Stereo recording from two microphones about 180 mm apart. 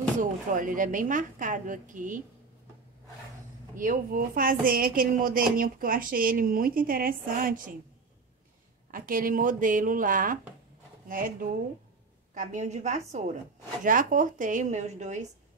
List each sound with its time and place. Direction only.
0.2 s speech: 45° right (ahead or behind)
3.7 s speech: 45° right (ahead or behind)
8.9 s a woman's voice: 50° right (ahead or behind)